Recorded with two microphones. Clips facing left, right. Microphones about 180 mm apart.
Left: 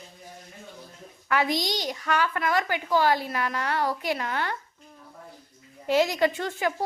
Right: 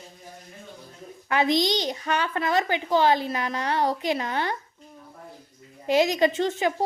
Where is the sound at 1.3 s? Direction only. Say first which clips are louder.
Right 4 dB; 20° right (ahead or behind).